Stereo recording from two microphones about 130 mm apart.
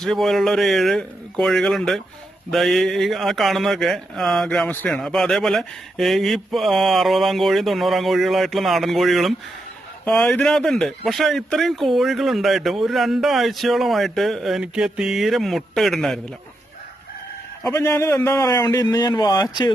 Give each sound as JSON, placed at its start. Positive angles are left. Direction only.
{"t": 0.0, "sound": "speech", "side_deg": 0}
{"t": 17.7, "sound": "a man's voice", "side_deg": 20}